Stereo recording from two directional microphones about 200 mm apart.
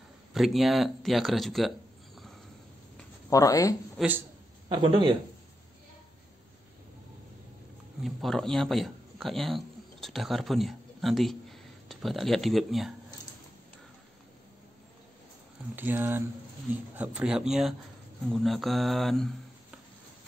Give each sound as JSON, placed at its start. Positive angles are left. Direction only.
{"t": 0.3, "sound": "speech", "side_deg": 0}
{"t": 3.3, "sound": "speech", "side_deg": 15}
{"t": 4.0, "sound": "speech", "side_deg": 0}
{"t": 4.6, "sound": "a man's voice", "side_deg": -25}
{"t": 8.0, "sound": "a man's voice", "side_deg": 0}
{"t": 15.7, "sound": "speech", "side_deg": -10}